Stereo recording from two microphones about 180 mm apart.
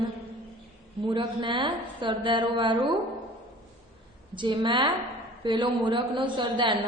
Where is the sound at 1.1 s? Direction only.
25° right (ahead or behind).